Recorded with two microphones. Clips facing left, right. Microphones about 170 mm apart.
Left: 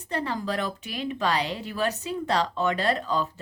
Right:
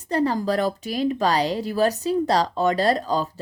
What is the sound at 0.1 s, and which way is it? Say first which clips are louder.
Speech: right 7 dB; 40° right (ahead or behind).